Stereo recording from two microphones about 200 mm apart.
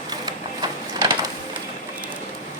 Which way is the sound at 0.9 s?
20° right (ahead or behind).